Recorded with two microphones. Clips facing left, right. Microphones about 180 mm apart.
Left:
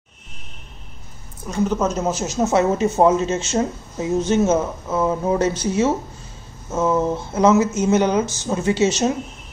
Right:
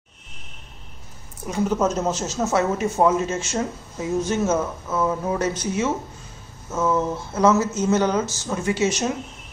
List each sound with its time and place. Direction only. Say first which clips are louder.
1.5 s a woman's voice: left 1 dB; 5° right (ahead or behind); by 2.6 s 15° left (ahead or behind)
2.8 s speech: left 3 dB; 25° left (ahead or behind)